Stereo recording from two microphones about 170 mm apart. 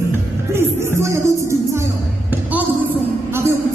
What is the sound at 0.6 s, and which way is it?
Music, 15° right (ahead or behind).